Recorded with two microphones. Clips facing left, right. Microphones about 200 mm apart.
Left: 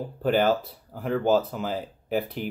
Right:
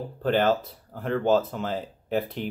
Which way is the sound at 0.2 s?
10° left (ahead or behind).